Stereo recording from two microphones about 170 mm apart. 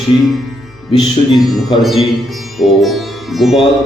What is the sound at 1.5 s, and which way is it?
Music, centre (ahead or behind).